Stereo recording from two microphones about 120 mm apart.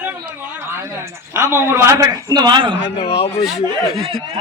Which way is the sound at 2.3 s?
35° right (ahead or behind).